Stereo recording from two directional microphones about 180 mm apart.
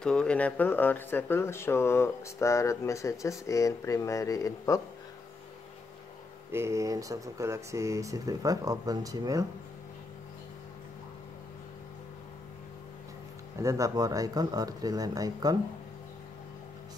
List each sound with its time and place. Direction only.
0.0 s speech: 5° left (ahead or behind)
6.5 s speech: 15° right (ahead or behind)
13.6 s speech: 15° right (ahead or behind)